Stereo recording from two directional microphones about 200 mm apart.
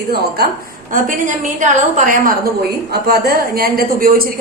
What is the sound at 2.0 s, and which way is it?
A woman's voice, 45° right (ahead or behind).